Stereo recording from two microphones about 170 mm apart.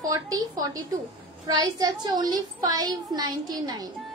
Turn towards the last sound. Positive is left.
turn(degrees=-25)  # may be behind; listen again after turning